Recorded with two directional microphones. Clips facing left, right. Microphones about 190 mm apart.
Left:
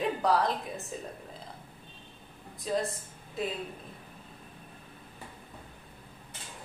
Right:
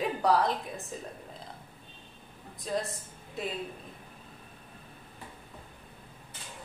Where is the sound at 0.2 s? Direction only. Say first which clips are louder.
Right 3 dB; centre (ahead or behind).